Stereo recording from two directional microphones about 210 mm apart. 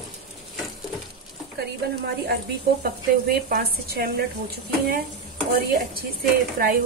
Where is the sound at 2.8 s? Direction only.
45° right (ahead or behind).